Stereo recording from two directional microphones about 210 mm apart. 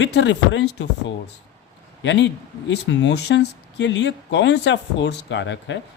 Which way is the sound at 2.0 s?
60° left (ahead or behind).